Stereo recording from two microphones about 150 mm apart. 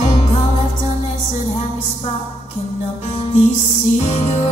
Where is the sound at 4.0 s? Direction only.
45° left (ahead or behind).